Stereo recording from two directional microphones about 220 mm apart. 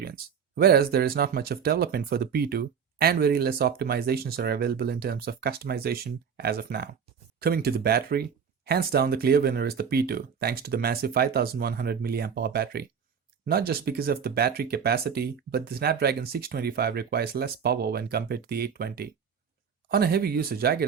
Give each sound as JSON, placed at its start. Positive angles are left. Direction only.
{"t": 0.0, "sound": "speech", "side_deg": -45}